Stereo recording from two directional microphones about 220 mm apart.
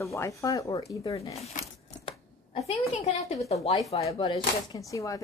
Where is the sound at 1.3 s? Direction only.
30° left (ahead or behind).